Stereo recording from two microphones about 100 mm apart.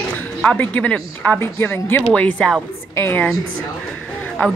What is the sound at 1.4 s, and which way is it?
A woman's voice, 25° left (ahead or behind).